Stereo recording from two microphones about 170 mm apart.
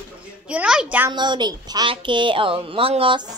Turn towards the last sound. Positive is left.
turn(degrees=-30)  # may be behind; listen again after turning